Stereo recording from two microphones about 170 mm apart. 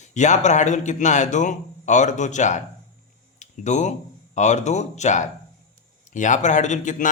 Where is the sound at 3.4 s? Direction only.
45° left (ahead or behind).